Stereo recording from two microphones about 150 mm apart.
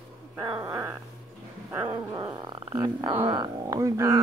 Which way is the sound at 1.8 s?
25° right (ahead or behind).